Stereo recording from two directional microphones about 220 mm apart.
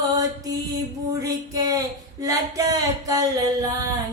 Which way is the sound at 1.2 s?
15° right (ahead or behind).